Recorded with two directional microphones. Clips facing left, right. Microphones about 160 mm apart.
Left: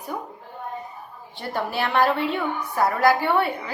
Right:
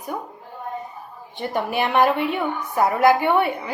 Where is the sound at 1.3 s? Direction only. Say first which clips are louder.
Right 3 dB; 15° right (ahead or behind).